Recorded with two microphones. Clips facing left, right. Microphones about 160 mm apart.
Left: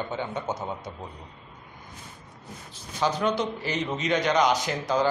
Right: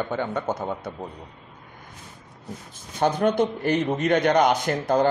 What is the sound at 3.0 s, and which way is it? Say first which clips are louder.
Speech: right 5 dB; 55° right (ahead or behind).